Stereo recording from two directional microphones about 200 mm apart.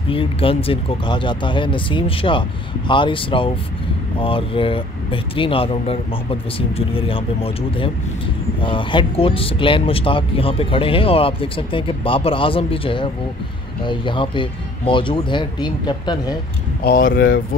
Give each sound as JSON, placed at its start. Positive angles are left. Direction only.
{"t": 0.1, "sound": "speech", "side_deg": 25}
{"t": 16.8, "sound": "speech", "side_deg": 45}